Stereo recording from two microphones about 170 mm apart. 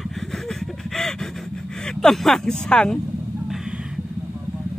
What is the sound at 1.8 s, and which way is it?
Speech, 5° left (ahead or behind).